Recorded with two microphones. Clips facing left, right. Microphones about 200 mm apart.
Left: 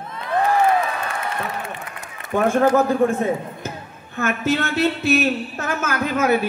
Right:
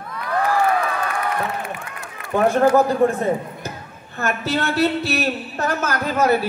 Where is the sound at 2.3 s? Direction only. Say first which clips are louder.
Right 1 dB; 35° right (ahead or behind).